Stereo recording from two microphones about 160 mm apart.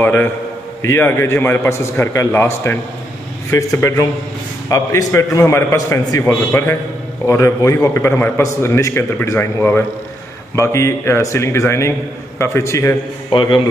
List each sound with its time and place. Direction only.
0.0 s a man's voice: 15° left (ahead or behind)
13.3 s a man's voice: 30° left (ahead or behind)